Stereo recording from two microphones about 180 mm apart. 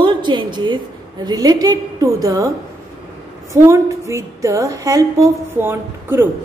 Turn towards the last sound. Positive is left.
turn(degrees=-10)  # may be behind; listen again after turning